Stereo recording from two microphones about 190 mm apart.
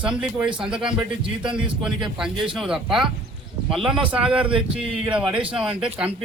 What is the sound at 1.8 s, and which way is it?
A man's voice, 5° right (ahead or behind).